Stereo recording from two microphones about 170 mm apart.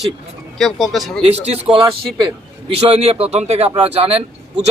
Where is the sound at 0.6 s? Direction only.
Centre (ahead or behind).